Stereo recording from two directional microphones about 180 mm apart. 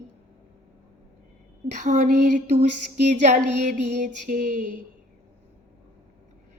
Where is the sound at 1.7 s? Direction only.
45° right (ahead or behind).